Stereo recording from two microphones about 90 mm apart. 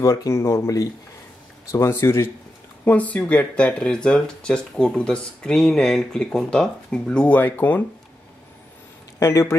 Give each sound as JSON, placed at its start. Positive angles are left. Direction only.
{"t": 0.0, "sound": "speech", "side_deg": 40}
{"t": 2.8, "sound": "speech", "side_deg": 15}
{"t": 9.2, "sound": "speech", "side_deg": 35}